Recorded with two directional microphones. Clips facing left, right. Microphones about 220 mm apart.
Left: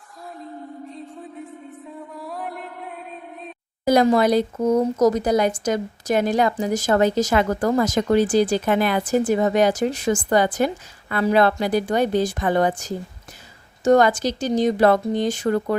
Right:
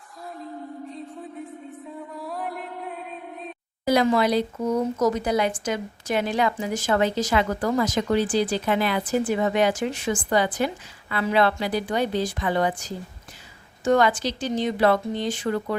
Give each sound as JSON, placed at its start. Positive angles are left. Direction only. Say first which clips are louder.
{"t": 0.9, "sound": "music", "louder": "even", "side_deg": 0}
{"t": 3.8, "sound": "speech", "louder": "left 4 dB", "side_deg": 45}